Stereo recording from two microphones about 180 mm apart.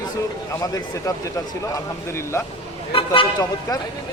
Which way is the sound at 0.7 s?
20° left (ahead or behind).